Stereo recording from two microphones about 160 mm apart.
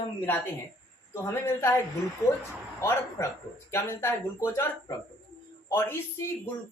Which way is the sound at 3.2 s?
15° left (ahead or behind).